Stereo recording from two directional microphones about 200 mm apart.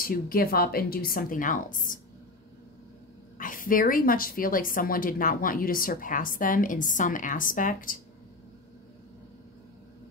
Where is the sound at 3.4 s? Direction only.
45° left (ahead or behind).